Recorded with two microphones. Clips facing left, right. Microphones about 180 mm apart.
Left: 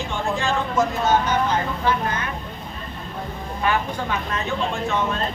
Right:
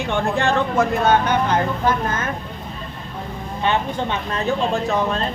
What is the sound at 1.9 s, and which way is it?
Speech, 45° right (ahead or behind).